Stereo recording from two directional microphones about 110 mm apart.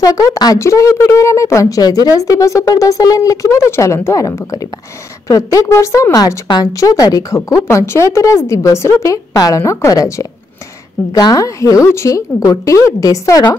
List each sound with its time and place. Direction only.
0.0 s a woman's voice: 35° left (ahead or behind)